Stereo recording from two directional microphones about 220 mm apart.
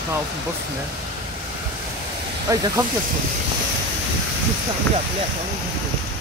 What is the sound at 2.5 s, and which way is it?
Speech, 15° right (ahead or behind).